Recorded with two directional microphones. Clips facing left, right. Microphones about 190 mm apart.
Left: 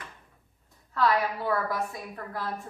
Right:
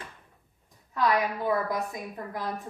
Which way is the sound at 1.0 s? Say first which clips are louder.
Even; 15° right (ahead or behind).